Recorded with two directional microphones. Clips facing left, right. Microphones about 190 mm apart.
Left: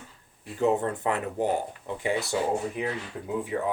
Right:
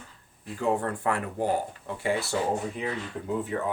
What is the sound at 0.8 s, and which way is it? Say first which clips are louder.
Speech: left 1 dB; 20° left (ahead or behind).